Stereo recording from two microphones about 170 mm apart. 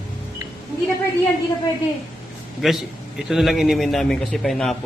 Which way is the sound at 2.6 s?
Centre (ahead or behind).